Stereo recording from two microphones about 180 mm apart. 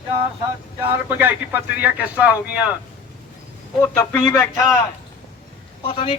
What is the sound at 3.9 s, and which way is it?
Speech, 10° left (ahead or behind).